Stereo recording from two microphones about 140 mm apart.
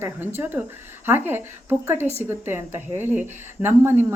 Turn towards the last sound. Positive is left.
turn(degrees=-15)  # may be behind; listen again after turning